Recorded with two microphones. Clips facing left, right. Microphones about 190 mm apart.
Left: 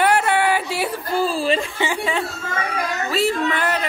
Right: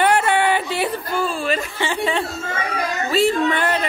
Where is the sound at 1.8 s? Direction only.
15° left (ahead or behind).